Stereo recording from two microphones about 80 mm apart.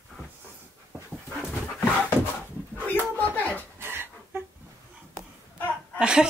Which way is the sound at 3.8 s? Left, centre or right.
Right.